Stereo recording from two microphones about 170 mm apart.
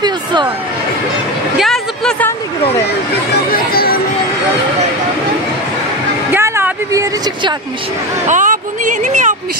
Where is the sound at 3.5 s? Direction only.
60° left (ahead or behind).